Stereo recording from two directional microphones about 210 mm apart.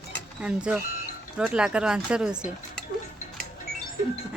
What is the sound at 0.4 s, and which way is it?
A woman's voice, 5° right (ahead or behind).